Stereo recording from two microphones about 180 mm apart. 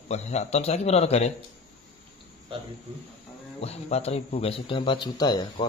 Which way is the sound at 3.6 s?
35° left (ahead or behind).